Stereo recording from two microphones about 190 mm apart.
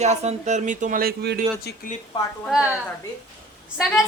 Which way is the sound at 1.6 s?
50° left (ahead or behind).